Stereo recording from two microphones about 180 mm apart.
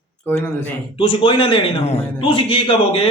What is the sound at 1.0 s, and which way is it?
A man's voice, 30° left (ahead or behind).